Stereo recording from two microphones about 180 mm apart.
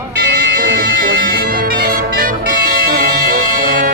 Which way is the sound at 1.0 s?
55° right (ahead or behind).